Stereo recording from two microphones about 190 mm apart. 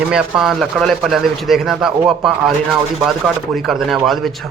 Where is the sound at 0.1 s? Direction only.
5° right (ahead or behind).